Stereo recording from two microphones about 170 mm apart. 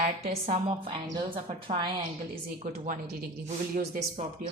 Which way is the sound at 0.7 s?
30° right (ahead or behind).